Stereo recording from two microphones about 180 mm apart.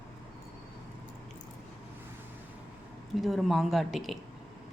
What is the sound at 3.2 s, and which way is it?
Speech, centre (ahead or behind).